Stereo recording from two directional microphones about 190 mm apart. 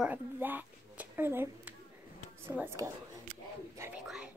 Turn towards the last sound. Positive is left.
turn(degrees=-5)  # may be behind; listen again after turning